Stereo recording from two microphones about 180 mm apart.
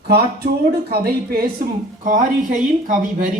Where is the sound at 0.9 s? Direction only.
55° right (ahead or behind).